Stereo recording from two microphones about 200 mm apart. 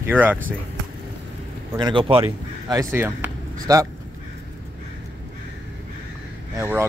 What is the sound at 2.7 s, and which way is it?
Speech, 10° right (ahead or behind).